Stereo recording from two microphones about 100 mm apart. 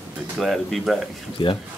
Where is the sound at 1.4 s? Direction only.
60° left (ahead or behind).